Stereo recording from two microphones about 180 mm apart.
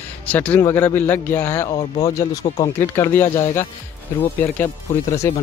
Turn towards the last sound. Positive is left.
turn(degrees=15)  # may be behind; listen again after turning